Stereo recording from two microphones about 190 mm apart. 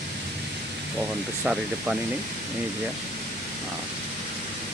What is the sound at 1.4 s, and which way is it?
Speech, 5° right (ahead or behind).